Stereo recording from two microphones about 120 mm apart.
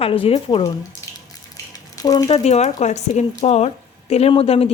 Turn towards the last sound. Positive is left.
turn(degrees=55)  # may be behind; listen again after turning